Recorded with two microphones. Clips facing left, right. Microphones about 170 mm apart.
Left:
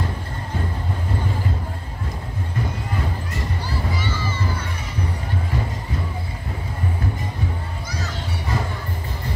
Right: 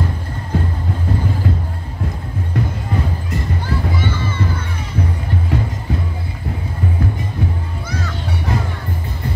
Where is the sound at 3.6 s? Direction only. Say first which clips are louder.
Right 5 dB; 55° right (ahead or behind).